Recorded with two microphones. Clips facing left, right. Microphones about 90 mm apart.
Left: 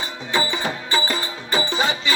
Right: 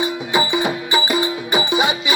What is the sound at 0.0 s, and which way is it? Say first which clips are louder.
Music: right 5 dB; 10° right (ahead or behind).